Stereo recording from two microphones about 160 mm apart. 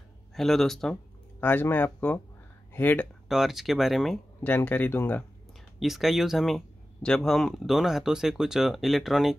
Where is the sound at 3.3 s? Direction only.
Centre (ahead or behind).